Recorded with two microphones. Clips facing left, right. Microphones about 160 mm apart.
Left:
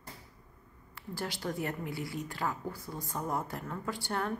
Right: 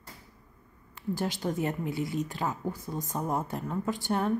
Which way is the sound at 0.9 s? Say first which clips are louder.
Right 7 dB; 20° right (ahead or behind).